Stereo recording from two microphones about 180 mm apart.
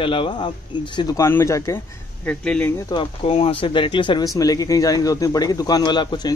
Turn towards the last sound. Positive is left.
turn(degrees=25)  # may be behind; listen again after turning